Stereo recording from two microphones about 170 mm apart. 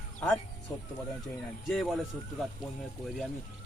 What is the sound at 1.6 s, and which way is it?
Speech, centre (ahead or behind).